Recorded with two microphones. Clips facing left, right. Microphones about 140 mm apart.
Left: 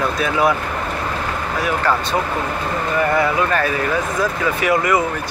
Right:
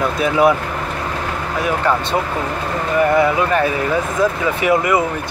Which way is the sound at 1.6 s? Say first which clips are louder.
Right 2 dB; 20° right (ahead or behind).